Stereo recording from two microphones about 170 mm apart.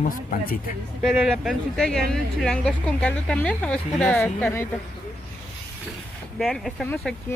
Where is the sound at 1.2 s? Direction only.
Centre (ahead or behind).